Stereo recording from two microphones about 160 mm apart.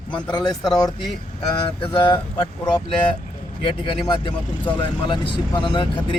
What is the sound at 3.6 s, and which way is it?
Speech, 30° left (ahead or behind).